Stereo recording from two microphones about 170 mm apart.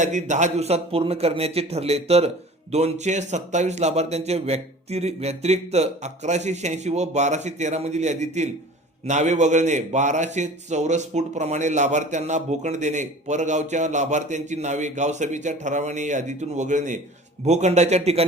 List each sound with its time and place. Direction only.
0.0 s a man's voice: 45° right (ahead or behind)